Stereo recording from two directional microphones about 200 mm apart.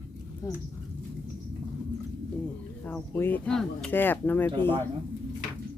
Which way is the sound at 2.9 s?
10° left (ahead or behind).